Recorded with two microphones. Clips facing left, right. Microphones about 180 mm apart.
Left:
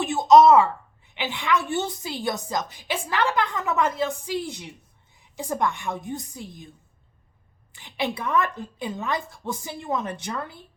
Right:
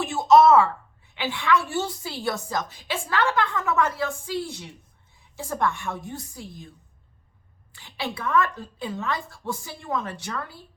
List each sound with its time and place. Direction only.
0.0 s a woman's voice: 20° left (ahead or behind)
7.7 s a woman's voice: 20° left (ahead or behind)